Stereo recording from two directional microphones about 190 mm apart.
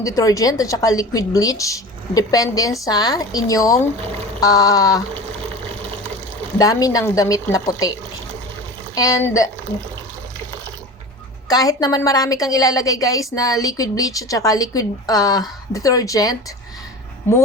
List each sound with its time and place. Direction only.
0.0 s a woman's voice: 15° left (ahead or behind)
6.6 s a woman's voice: 20° left (ahead or behind)
9.0 s a woman's voice: 15° left (ahead or behind)
11.4 s a woman's voice: 20° left (ahead or behind)